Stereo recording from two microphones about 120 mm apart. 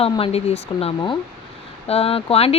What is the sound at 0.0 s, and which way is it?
Speech, 55° left (ahead or behind).